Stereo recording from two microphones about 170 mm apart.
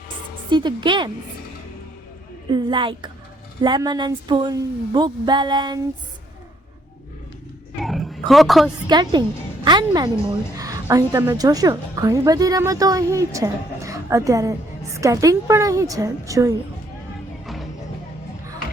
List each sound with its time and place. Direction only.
0.5 s a woman's voice: 30° right (ahead or behind)
2.5 s a woman's voice: 30° right (ahead or behind)
7.8 s roaring cats: centre (ahead or behind)
8.9 s a woman's voice: 25° right (ahead or behind)
17.4 s music: centre (ahead or behind)